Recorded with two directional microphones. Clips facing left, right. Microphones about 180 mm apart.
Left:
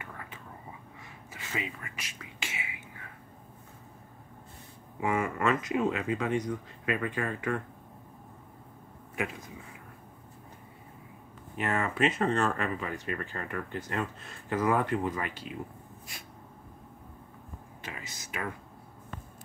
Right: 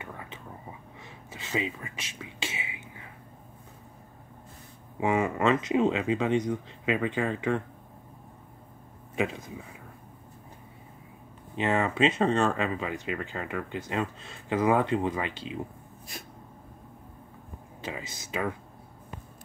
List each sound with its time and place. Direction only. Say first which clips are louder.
0.0 s whispering: right 3 dB; 25° right (ahead or behind)
5.0 s speech: right 4 dB; 25° right (ahead or behind)
9.1 s speech: right 5 dB; 25° right (ahead or behind)
11.5 s speech: right 4 dB; 25° right (ahead or behind)
17.8 s speech: right 7 dB; 25° right (ahead or behind)